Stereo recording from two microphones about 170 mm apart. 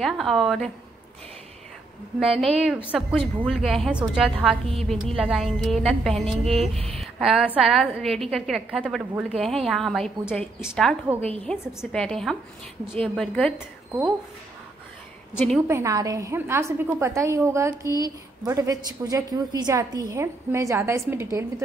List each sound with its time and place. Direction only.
0.0 s a woman's voice: centre (ahead or behind)
2.1 s a woman's voice: centre (ahead or behind)
7.0 s a sound: centre (ahead or behind)
7.5 s a woman's voice: centre (ahead or behind)
11.1 s a woman's voice: 35° right (ahead or behind)
11.4 s a woman's voice: 5° left (ahead or behind)
15.3 s a woman's voice: centre (ahead or behind)
15.7 s a woman's voice: 20° right (ahead or behind)